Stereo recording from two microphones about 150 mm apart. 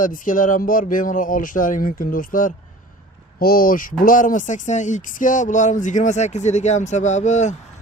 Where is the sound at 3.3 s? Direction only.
80° left; by 7.5 s 50° left (ahead or behind).